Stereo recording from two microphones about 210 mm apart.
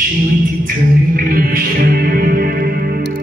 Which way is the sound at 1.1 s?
45° right (ahead or behind).